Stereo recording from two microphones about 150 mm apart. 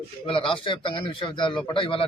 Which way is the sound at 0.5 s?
35° left (ahead or behind).